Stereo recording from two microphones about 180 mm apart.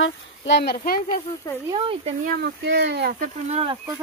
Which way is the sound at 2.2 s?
60° right (ahead or behind).